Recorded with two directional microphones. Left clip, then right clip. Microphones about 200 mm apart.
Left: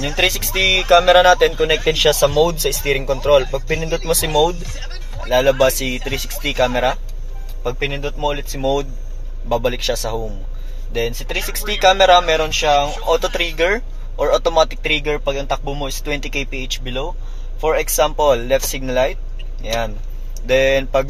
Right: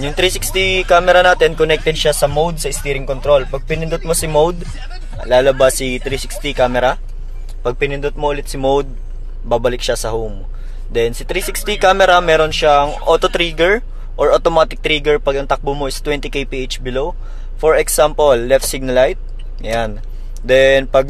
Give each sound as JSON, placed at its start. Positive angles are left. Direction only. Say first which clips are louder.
{"t": 0.0, "sound": "speech", "louder": "right 1 dB", "side_deg": -25}
{"t": 1.9, "sound": "speech", "louder": "even", "side_deg": -5}
{"t": 5.3, "sound": "speech", "louder": "right 3 dB", "side_deg": -40}
{"t": 10.9, "sound": "speech", "louder": "right 5 dB", "side_deg": -40}